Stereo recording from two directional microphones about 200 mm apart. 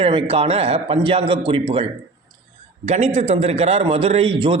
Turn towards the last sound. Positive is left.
turn(degrees=-30)  # may be behind; listen again after turning